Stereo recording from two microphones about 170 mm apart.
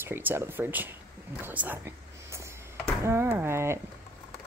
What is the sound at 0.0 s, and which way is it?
Speech, 10° right (ahead or behind).